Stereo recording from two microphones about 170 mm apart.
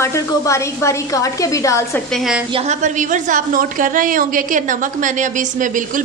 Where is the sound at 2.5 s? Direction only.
45° right (ahead or behind).